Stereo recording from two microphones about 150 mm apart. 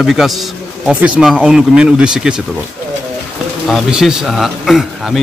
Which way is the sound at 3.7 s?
5° right (ahead or behind).